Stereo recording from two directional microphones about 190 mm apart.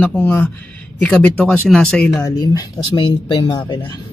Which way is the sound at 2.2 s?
20° left (ahead or behind).